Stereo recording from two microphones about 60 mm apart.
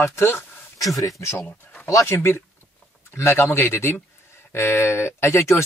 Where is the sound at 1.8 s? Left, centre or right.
Left.